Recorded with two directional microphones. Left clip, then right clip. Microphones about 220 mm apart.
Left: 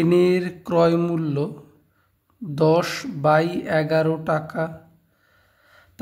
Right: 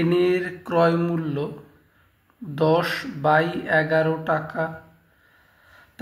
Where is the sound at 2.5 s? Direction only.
45° left (ahead or behind).